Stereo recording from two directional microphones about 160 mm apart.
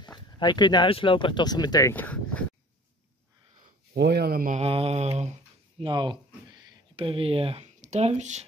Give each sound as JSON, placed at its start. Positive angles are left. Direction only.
{"t": 0.4, "sound": "speech", "side_deg": 25}
{"t": 3.9, "sound": "speech", "side_deg": -90}
{"t": 4.6, "sound": "mantra", "side_deg": -40}
{"t": 5.9, "sound": "speech", "side_deg": -30}